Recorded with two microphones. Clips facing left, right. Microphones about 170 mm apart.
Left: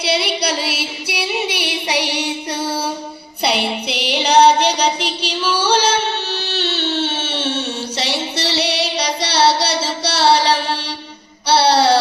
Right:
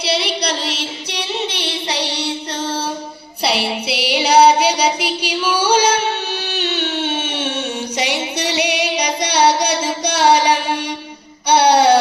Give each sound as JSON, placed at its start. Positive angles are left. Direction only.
{"t": 0.0, "sound": "singing", "side_deg": 0}
{"t": 3.4, "sound": "music", "side_deg": 0}
{"t": 6.4, "sound": "a sound", "side_deg": -15}